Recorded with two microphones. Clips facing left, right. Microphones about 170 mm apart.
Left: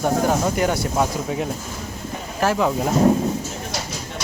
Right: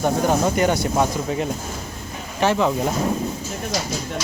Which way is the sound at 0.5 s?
Centre (ahead or behind).